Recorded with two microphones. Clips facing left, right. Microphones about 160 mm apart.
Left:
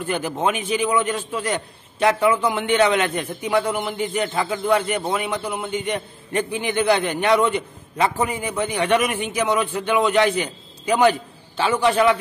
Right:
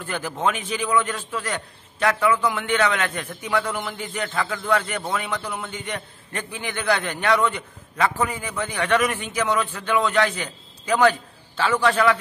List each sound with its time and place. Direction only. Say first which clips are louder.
0.0 s a man's voice: left 3 dB; 20° left (ahead or behind)